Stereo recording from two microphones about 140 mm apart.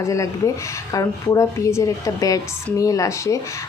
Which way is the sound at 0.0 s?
20° left (ahead or behind).